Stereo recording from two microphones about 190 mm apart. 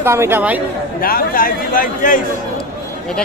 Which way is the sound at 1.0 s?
50° left (ahead or behind).